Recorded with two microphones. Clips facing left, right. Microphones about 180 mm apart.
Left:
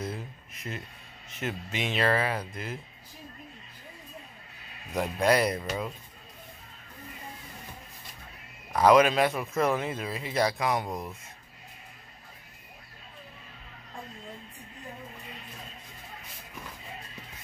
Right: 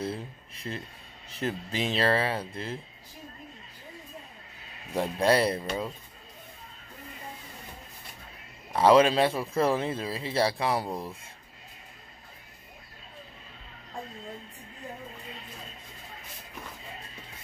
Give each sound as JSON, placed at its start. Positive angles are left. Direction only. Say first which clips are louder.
{"t": 0.0, "sound": "speech", "louder": "right 2 dB", "side_deg": -30}
{"t": 4.9, "sound": "speech", "louder": "right 1 dB", "side_deg": -30}
{"t": 8.7, "sound": "speech", "louder": "right 1 dB", "side_deg": -30}